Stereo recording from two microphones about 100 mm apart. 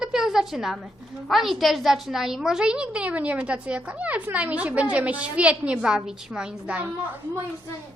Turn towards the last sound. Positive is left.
turn(degrees=-10)  # may be behind; listen again after turning